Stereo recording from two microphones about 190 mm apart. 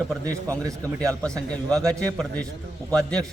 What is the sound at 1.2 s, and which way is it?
A man's voice, 5° left (ahead or behind).